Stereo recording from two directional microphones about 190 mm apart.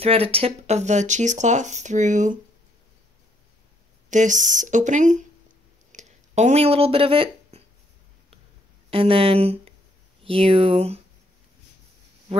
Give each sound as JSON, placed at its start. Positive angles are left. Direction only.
{"t": 0.0, "sound": "speech", "side_deg": -30}
{"t": 4.1, "sound": "speech", "side_deg": -40}
{"t": 5.9, "sound": "a sound", "side_deg": -40}
{"t": 8.9, "sound": "speech", "side_deg": -30}